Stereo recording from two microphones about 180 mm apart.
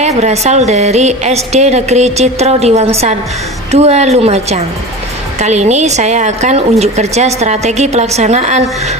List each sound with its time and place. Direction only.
0.0 s a woman's voice: 40° right (ahead or behind)